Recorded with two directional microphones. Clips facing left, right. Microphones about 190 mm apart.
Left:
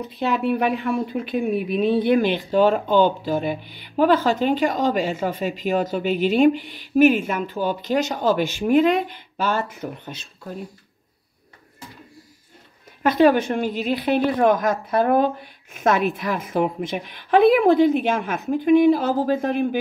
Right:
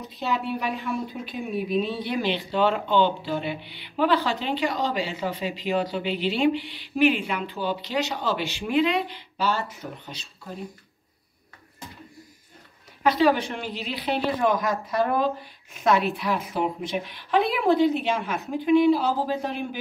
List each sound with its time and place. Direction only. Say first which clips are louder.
0.1 s speech: left 6 dB; 60° left (ahead or behind)
13.0 s speech: left 4 dB; 50° left (ahead or behind)